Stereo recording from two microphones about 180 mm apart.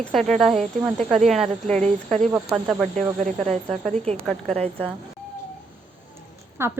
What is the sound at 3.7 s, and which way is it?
Speech, 5° left (ahead or behind).